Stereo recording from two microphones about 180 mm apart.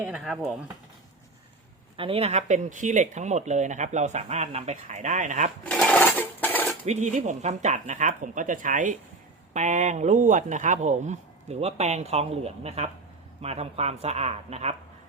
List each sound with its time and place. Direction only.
0.0 s speech: 5° right (ahead or behind)
2.0 s speech: 30° right (ahead or behind)
5.6 s a sound: 5° left (ahead or behind)
6.8 s speech: 40° right (ahead or behind)